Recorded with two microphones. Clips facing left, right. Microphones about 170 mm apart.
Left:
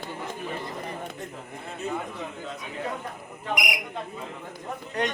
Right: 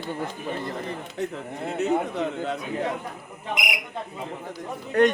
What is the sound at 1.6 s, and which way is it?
Speech, 75° right (ahead or behind).